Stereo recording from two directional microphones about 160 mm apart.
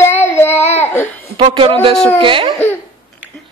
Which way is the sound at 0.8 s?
15° left (ahead or behind).